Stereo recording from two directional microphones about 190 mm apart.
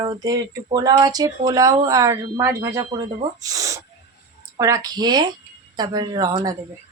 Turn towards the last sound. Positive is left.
turn(degrees=-20)  # may be behind; listen again after turning